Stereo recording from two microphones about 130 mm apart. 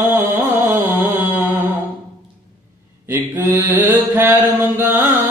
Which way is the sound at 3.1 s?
15° right (ahead or behind).